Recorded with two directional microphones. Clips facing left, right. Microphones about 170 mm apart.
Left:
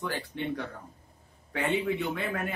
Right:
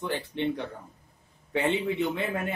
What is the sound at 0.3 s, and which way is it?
Speech, 20° right (ahead or behind).